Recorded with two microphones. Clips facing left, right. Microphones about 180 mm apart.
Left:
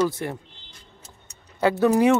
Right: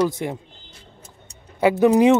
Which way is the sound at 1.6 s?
15° right (ahead or behind).